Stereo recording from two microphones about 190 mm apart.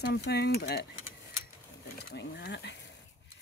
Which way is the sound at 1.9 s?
60° left (ahead or behind).